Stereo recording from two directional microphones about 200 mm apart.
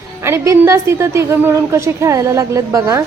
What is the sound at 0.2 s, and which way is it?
A woman's voice, 15° right (ahead or behind).